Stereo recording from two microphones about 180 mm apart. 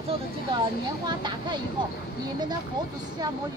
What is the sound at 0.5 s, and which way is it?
A woman's voice, 25° right (ahead or behind).